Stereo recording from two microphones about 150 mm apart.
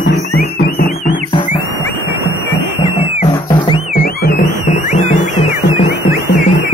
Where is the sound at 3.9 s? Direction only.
75° left (ahead or behind).